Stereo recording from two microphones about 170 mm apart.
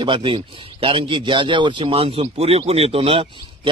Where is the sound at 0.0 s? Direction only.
30° right (ahead or behind).